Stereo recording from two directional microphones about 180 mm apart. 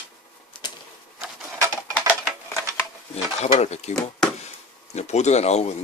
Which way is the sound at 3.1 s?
35° left (ahead or behind).